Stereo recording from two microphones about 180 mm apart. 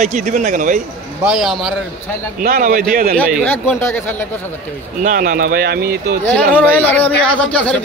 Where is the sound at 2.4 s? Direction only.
50° right (ahead or behind).